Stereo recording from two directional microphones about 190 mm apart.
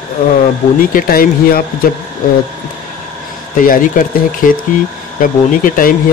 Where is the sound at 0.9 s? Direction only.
50° left (ahead or behind).